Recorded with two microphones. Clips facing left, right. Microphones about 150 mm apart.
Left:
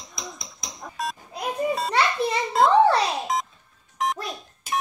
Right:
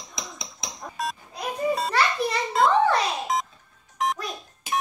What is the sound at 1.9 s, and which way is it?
Children playing, 25° left (ahead or behind).